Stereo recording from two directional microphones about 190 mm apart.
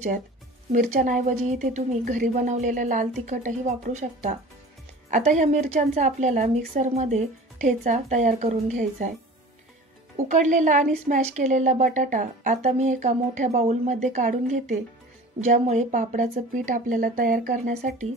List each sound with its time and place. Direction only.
0.7 s speech: 40° right (ahead or behind)